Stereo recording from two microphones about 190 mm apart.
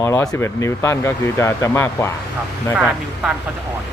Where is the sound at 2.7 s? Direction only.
5° right (ahead or behind).